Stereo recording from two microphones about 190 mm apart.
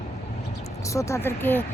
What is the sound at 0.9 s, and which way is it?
Speech, 15° left (ahead or behind).